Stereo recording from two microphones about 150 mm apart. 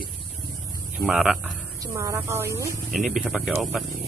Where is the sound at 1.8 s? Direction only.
20° right (ahead or behind).